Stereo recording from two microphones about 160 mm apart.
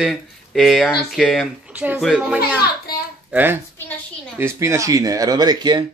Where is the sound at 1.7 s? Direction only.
10° right (ahead or behind).